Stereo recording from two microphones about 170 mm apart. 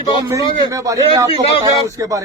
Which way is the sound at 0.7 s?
20° right (ahead or behind).